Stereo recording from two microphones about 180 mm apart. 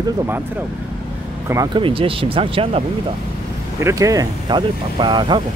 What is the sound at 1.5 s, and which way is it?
Speech, 20° right (ahead or behind).